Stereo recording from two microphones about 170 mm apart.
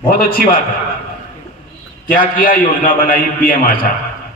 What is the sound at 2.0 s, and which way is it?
A man's voice, 55° left (ahead or behind).